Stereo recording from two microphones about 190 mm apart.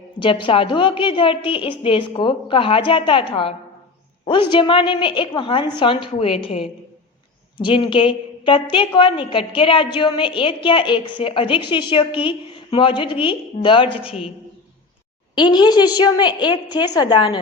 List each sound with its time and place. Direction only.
0.2 s a woman's voice: 25° left (ahead or behind)
15.4 s a woman's voice: 25° left (ahead or behind)